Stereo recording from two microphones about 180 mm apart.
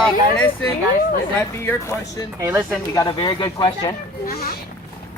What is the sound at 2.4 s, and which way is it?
Speech, 15° right (ahead or behind).